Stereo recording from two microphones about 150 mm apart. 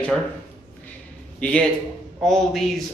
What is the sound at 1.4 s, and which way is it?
Speech, 10° left (ahead or behind).